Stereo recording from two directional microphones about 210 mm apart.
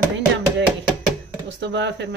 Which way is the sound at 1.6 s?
55° right (ahead or behind).